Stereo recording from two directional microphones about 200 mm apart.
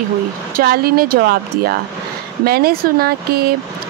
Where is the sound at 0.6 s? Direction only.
50° right (ahead or behind).